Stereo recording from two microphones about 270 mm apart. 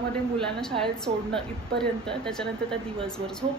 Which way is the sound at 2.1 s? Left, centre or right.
Centre.